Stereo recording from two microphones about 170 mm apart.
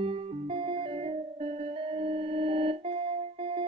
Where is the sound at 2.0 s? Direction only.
35° right (ahead or behind).